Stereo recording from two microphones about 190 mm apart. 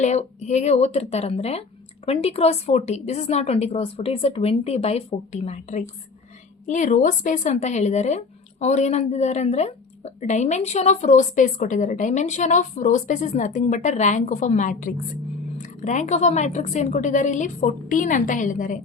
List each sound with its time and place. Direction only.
0.0 s a woman's voice: 35° left (ahead or behind)